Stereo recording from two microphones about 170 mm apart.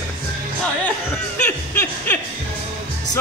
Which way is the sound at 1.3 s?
10° left (ahead or behind).